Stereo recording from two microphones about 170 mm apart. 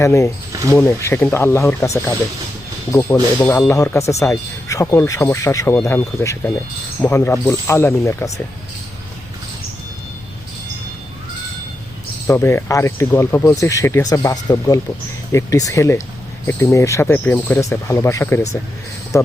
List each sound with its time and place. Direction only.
0.0 s speech: 15° left (ahead or behind)
12.3 s speech: 15° left (ahead or behind)